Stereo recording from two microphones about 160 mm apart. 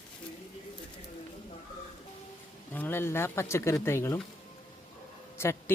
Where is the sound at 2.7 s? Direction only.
15° left (ahead or behind).